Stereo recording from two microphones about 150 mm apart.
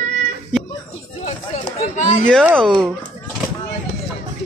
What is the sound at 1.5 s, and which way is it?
Chatter, 55° left (ahead or behind).